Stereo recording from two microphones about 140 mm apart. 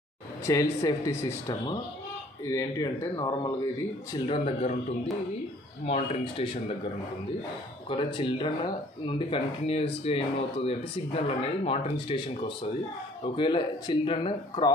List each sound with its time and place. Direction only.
0.5 s speech: 25° left (ahead or behind)
4.3 s speech: 45° left (ahead or behind)
5.9 s speech: 45° left (ahead or behind)
7.9 s speech: 35° left (ahead or behind)